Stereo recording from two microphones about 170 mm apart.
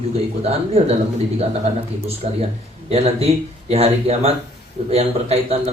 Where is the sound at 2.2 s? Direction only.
40° right (ahead or behind).